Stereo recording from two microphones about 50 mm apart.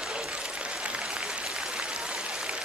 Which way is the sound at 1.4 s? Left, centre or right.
Centre.